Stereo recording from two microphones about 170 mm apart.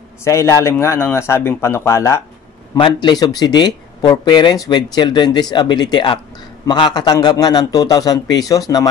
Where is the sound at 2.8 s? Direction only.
25° left (ahead or behind).